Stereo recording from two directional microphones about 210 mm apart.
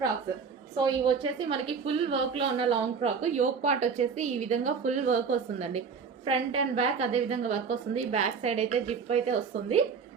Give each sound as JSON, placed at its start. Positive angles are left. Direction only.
{"t": 0.9, "sound": "a woman's voice", "side_deg": -20}